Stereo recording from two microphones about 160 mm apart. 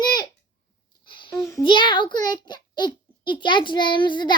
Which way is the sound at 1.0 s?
30° left (ahead or behind).